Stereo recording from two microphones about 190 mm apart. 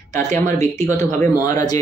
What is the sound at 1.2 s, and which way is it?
Speech, 15° left (ahead or behind).